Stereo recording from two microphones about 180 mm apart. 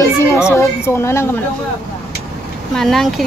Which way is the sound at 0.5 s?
15° left (ahead or behind).